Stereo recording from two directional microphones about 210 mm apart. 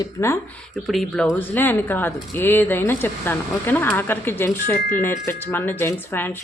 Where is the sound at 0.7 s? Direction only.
Centre (ahead or behind).